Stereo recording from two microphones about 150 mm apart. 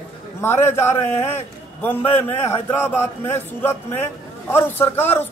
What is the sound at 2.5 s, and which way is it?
A man's voice, 15° left (ahead or behind).